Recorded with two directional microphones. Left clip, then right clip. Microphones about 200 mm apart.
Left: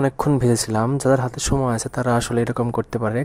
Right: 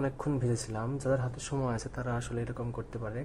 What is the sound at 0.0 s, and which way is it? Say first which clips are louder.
Speech: left 14 dB; 40° left (ahead or behind).